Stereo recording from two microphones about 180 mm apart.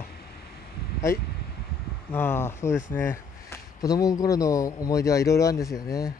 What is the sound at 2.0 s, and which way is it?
Speech, 10° left (ahead or behind).